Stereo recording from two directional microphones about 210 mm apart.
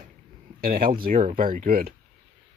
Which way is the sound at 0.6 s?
45° right (ahead or behind).